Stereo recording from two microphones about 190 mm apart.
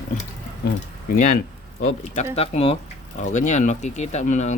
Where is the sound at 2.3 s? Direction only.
30° left (ahead or behind).